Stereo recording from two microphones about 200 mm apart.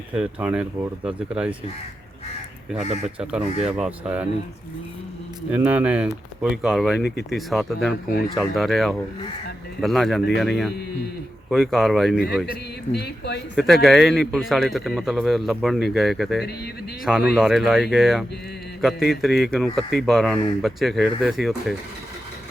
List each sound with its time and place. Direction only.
0.1 s speech: 5° right (ahead or behind)
3.6 s speech: 5° right (ahead or behind)
5.5 s speech: 5° right (ahead or behind)
12.9 s speech: 55° left (ahead or behind)
13.6 s speech: centre (ahead or behind)